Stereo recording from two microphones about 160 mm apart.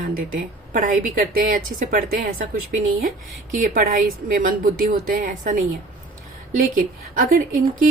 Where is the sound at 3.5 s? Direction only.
55° right (ahead or behind).